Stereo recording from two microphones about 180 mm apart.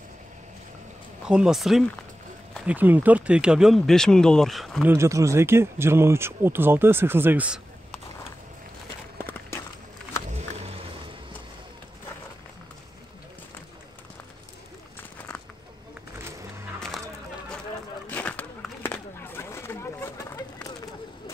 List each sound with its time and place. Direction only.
1.2 s speech: 5° right (ahead or behind)
4.8 s speech: 15° right (ahead or behind)
10.3 s wild animals: 40° right (ahead or behind)
18.0 s a sound: 10° left (ahead or behind)